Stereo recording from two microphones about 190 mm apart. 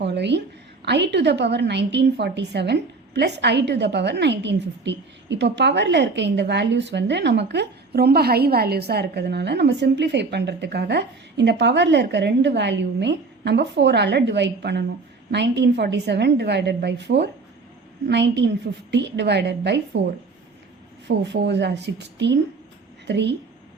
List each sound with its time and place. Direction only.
0.0 s a woman's voice: 65° right (ahead or behind)
21.2 s a woman's voice: 65° right (ahead or behind)